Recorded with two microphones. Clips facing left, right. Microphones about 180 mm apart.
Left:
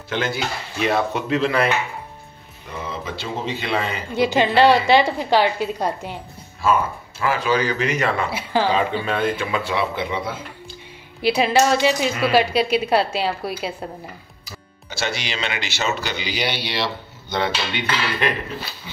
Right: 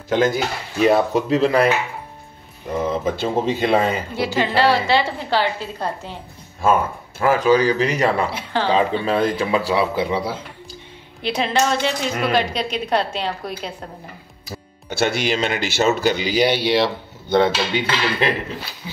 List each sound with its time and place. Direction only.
0.1 s speech: 40° right (ahead or behind)
2.8 s speech: 45° right (ahead or behind)
4.1 s a woman's voice: 20° left (ahead or behind)
7.2 s speech: 45° right (ahead or behind)
8.3 s speech: 5° left (ahead or behind)
9.0 s speech: 35° right (ahead or behind)
11.2 s speech: 5° left (ahead or behind)
14.9 s speech: 55° right (ahead or behind)
18.2 s speech: 30° right (ahead or behind)